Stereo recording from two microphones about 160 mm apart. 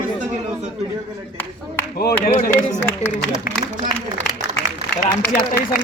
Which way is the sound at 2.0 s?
65° left (ahead or behind).